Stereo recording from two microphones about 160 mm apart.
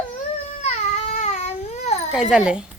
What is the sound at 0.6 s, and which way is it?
Baby cry, 45° left (ahead or behind).